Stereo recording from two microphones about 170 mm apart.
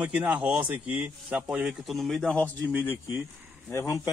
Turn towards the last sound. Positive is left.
turn(degrees=15)  # may be behind; listen again after turning